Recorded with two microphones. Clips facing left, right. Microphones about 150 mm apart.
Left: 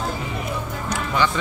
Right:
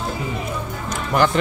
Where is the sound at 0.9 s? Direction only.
50° right (ahead or behind).